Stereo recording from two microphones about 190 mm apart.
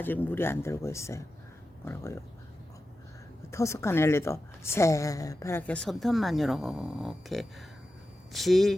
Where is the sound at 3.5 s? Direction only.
15° left (ahead or behind).